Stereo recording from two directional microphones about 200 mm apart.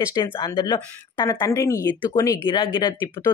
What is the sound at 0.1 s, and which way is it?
Speech, 20° left (ahead or behind).